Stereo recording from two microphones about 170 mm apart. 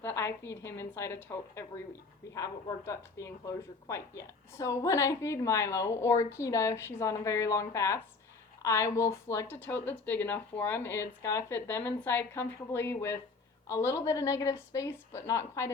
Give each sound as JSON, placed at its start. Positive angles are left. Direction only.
{"t": 0.0, "sound": "speech", "side_deg": 15}